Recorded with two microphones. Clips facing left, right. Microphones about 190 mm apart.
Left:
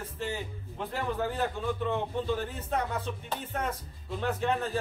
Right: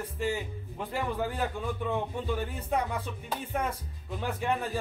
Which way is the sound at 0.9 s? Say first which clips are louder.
Even; 10° right (ahead or behind).